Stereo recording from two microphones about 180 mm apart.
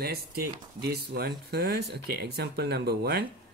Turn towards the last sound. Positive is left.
turn(degrees=-65)  # may be behind; listen again after turning